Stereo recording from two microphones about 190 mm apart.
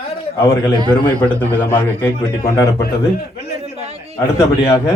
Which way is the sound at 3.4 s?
55° left (ahead or behind).